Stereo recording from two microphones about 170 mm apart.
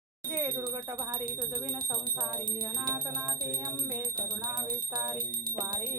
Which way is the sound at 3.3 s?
55° right (ahead or behind).